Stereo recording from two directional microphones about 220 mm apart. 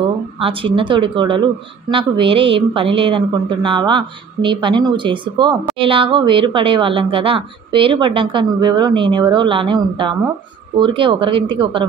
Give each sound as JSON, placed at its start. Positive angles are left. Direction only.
{"t": 0.4, "sound": "speech", "side_deg": -25}